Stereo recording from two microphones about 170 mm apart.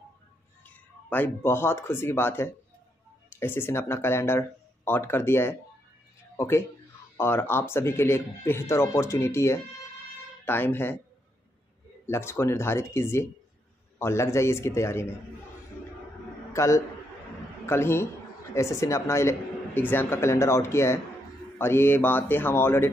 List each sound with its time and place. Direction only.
0.7 s speech: 10° left (ahead or behind)
12.1 s speech: 15° left (ahead or behind)
16.5 s a man's voice: 20° left (ahead or behind)